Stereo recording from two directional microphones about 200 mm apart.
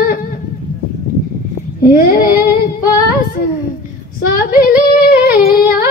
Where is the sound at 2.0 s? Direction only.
45° left (ahead or behind).